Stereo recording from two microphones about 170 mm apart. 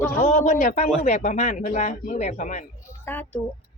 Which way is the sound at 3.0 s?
10° left (ahead or behind).